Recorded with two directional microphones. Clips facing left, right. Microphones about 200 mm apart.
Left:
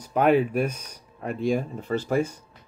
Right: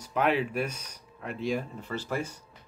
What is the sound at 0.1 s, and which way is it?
Speech, 45° left (ahead or behind).